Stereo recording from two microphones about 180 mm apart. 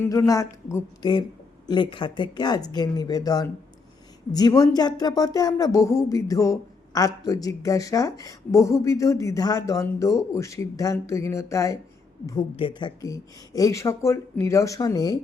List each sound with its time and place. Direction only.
0.0 s speech: 15° left (ahead or behind)